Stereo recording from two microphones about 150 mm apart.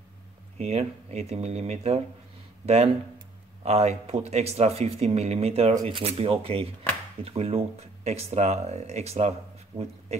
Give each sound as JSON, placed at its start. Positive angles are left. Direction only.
{"t": 0.6, "sound": "speech", "side_deg": -45}